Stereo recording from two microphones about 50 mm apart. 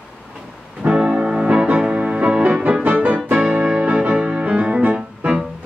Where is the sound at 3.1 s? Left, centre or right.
Right.